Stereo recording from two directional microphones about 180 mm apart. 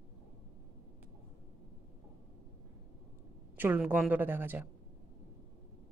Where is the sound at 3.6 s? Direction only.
10° right (ahead or behind).